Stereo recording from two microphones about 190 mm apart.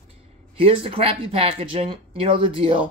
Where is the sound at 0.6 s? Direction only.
30° right (ahead or behind).